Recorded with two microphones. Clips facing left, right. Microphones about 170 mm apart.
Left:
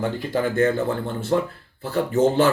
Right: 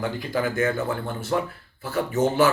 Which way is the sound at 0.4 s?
30° left (ahead or behind).